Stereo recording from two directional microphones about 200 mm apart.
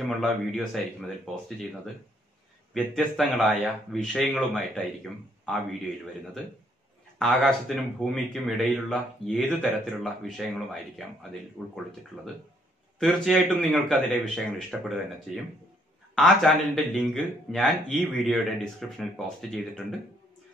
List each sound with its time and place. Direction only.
0.2 s speech: centre (ahead or behind)
7.2 s speech: centre (ahead or behind)
13.0 s speech: centre (ahead or behind)